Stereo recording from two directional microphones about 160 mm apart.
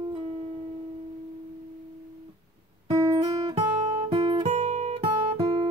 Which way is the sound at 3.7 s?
35° right (ahead or behind).